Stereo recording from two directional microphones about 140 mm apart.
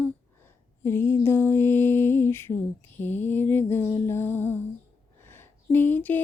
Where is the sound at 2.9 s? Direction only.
15° left (ahead or behind).